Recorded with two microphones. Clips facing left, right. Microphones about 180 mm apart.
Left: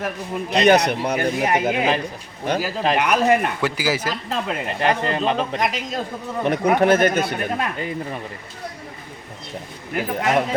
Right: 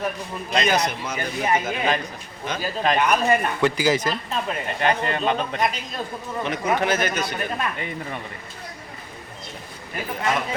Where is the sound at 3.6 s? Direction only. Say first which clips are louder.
Right 2 dB; 5° left (ahead or behind).